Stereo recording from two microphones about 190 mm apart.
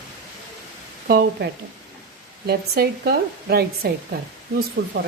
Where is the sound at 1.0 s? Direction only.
55° right (ahead or behind).